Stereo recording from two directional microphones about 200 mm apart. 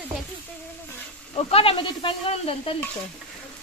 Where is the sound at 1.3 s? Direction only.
30° left (ahead or behind).